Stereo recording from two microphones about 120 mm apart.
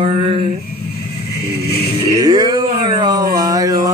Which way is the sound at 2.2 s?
35° right (ahead or behind).